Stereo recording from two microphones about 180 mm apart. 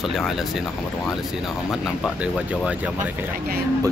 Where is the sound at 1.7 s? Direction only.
Centre (ahead or behind).